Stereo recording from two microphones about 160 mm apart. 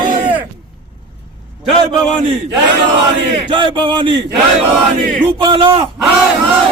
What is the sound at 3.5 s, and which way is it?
Speech, 30° right (ahead or behind).